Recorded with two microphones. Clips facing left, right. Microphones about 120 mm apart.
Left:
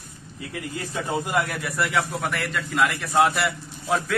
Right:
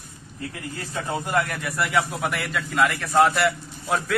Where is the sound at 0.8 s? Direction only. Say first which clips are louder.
Left 2 dB; 15° left (ahead or behind).